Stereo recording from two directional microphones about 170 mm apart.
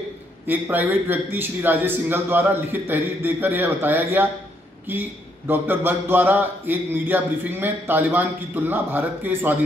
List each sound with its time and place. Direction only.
0.5 s a man's voice: 10° right (ahead or behind)
5.5 s a man's voice: 10° right (ahead or behind)